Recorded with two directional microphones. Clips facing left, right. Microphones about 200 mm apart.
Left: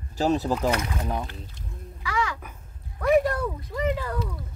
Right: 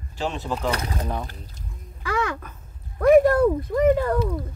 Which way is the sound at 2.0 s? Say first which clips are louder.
Right 3 dB; 50° right (ahead or behind).